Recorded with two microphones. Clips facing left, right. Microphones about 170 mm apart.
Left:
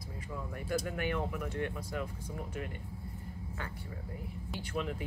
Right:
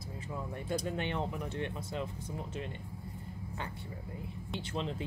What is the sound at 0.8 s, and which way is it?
Speech, 25° right (ahead or behind).